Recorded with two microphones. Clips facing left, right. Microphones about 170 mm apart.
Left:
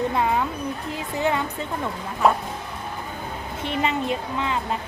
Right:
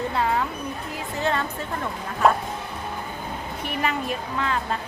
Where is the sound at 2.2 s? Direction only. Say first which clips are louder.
Even; centre (ahead or behind).